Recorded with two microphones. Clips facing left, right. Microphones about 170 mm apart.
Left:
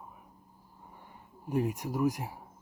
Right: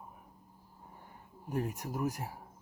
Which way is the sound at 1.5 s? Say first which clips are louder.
Left 5 dB; 15° left (ahead or behind).